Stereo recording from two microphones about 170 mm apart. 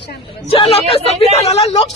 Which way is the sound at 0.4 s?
35° left (ahead or behind).